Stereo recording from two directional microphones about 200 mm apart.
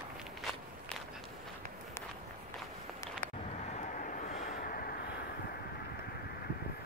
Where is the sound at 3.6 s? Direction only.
35° left (ahead or behind).